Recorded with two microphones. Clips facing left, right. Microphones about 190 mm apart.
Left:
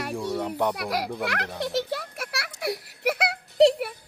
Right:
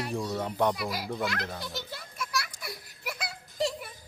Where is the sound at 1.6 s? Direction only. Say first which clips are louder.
Left 12 dB; 70° left (ahead or behind).